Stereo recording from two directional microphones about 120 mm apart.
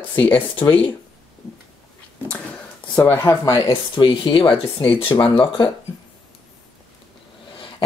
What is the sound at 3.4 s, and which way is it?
Speech, 35° left (ahead or behind).